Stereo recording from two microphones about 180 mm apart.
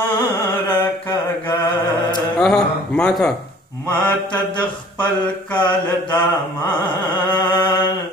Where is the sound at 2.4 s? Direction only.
5° left (ahead or behind).